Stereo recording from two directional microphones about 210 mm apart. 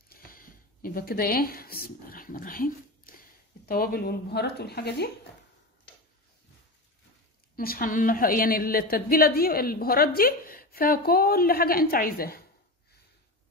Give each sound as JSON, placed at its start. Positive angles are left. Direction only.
{"t": 0.1, "sound": "speech", "side_deg": 40}
{"t": 7.5, "sound": "a woman's voice", "side_deg": 45}